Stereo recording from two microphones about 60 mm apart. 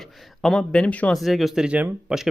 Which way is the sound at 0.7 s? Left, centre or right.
Centre.